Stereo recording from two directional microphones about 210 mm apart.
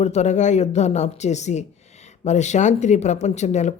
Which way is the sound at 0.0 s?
35° left (ahead or behind).